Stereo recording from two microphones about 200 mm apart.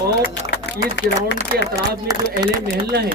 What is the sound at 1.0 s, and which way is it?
Speech, 60° left (ahead or behind).